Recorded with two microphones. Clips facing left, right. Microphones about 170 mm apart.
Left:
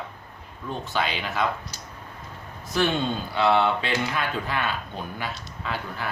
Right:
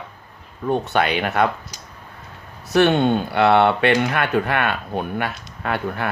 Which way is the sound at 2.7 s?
70° right (ahead or behind).